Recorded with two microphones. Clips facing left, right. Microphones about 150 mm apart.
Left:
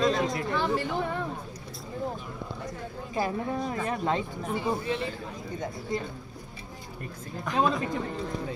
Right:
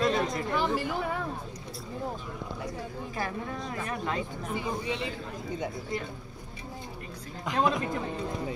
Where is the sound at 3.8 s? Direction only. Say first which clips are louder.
Left 3 dB; 25° left (ahead or behind).